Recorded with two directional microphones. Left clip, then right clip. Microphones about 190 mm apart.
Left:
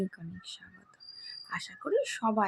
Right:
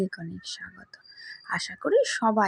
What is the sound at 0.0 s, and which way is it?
Speech, 20° right (ahead or behind).